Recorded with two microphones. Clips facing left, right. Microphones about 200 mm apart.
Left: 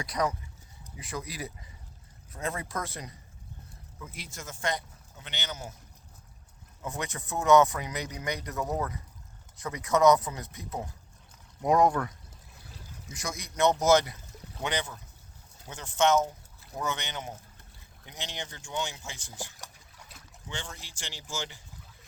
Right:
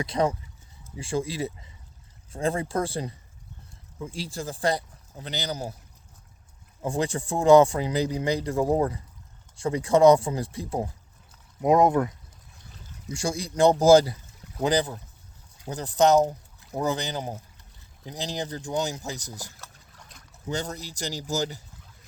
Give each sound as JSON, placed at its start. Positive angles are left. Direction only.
{"t": 0.0, "sound": "a man's voice", "side_deg": -25}
{"t": 6.8, "sound": "a man's voice", "side_deg": -30}
{"t": 13.1, "sound": "speech", "side_deg": -30}
{"t": 19.5, "sound": "boat", "side_deg": 10}
{"t": 20.5, "sound": "speech", "side_deg": -40}